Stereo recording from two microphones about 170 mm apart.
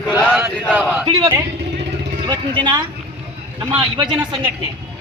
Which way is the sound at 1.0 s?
30° right (ahead or behind).